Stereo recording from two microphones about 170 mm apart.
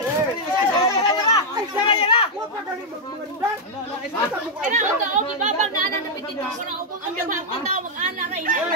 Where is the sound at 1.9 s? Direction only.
30° left (ahead or behind).